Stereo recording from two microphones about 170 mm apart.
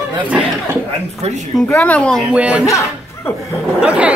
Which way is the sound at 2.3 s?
5° right (ahead or behind).